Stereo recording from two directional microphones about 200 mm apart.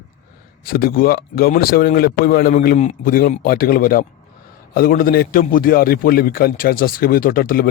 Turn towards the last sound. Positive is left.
turn(degrees=45)  # may be behind; listen again after turning